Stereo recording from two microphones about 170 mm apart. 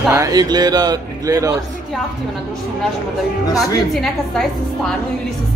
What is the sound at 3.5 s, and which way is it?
Speech, centre (ahead or behind).